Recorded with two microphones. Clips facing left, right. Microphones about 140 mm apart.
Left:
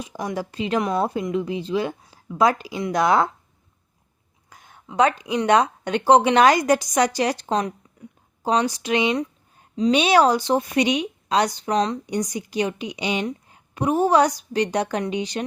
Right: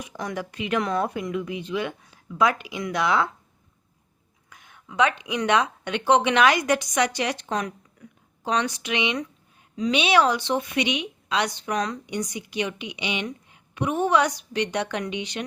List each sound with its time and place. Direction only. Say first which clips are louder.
0.0 s speech: left 3 dB; 25° left (ahead or behind); by 3.2 s 40° left (ahead or behind)
4.4 s speech: left 4 dB; 35° left (ahead or behind)
12.1 s speech: left 3 dB; 40° left (ahead or behind)